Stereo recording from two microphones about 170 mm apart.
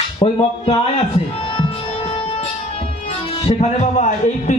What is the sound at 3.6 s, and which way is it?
Speech, 45° left (ahead or behind).